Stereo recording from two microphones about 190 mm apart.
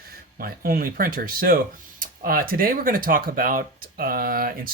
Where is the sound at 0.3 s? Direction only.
50° right (ahead or behind).